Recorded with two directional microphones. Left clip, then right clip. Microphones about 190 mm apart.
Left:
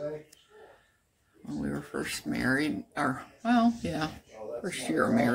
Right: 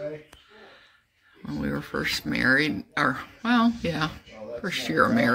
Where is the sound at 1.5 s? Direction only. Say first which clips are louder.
Right 5 dB; 5° right (ahead or behind).